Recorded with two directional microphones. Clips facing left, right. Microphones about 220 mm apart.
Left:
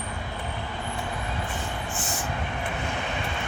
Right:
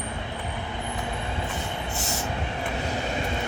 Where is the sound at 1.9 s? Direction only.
40° right (ahead or behind).